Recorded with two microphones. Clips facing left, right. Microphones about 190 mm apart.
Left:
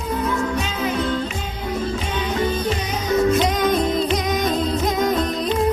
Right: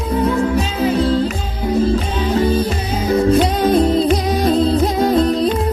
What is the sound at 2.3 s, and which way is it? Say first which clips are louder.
Music: right 6 dB; 30° right (ahead or behind).